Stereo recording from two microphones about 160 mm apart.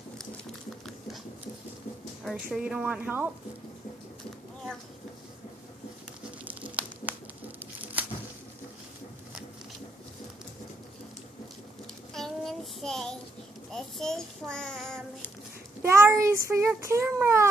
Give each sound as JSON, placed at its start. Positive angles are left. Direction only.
{"t": 0.8, "sound": "a sound", "side_deg": 0}
{"t": 2.2, "sound": "a woman's voice", "side_deg": -5}
{"t": 6.4, "sound": "a sound", "side_deg": -10}
{"t": 12.1, "sound": "child singing", "side_deg": 0}
{"t": 13.7, "sound": "a child's voice", "side_deg": 0}
{"t": 15.8, "sound": "a woman's voice", "side_deg": -15}